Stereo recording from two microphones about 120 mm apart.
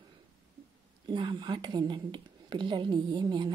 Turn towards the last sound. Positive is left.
turn(degrees=-40)  # may be behind; listen again after turning